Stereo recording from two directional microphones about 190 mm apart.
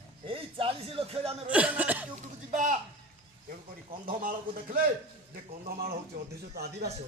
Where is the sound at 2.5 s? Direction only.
40° right (ahead or behind).